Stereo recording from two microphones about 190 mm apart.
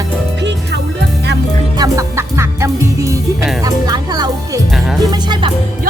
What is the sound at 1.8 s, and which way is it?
Music, 15° right (ahead or behind).